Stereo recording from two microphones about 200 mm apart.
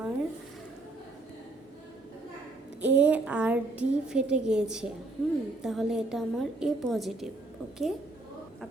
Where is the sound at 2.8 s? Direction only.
10° right (ahead or behind).